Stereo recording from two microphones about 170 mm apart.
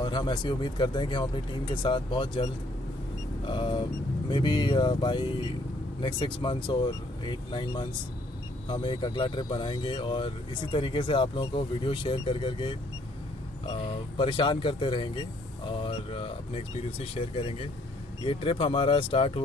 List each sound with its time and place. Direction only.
0.0 s speech: 25° left (ahead or behind)
3.4 s speech: 30° left (ahead or behind)